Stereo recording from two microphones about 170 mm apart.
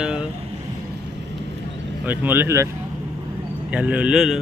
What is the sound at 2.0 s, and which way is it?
Speech, 10° right (ahead or behind).